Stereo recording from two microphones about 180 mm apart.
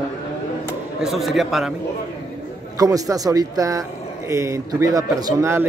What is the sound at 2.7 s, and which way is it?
Speech, 20° right (ahead or behind).